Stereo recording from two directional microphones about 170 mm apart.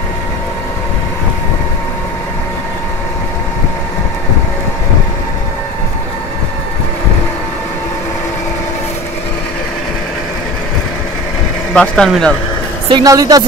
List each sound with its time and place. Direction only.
11.7 s speech: 5° left (ahead or behind)
12.9 s a woman's voice: 20° right (ahead or behind)